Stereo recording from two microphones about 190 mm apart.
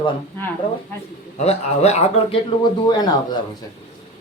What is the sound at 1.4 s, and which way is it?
Speech, 35° left (ahead or behind).